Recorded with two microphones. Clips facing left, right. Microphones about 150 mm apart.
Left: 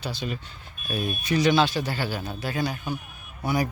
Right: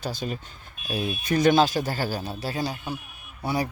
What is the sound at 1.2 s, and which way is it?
Speech, 50° right (ahead or behind).